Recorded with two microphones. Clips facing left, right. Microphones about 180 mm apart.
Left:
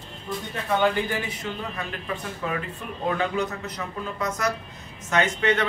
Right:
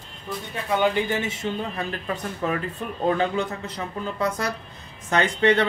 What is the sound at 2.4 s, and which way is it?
Speech, 40° right (ahead or behind).